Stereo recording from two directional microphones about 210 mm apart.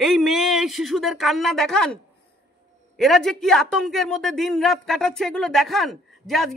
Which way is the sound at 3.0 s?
Centre (ahead or behind).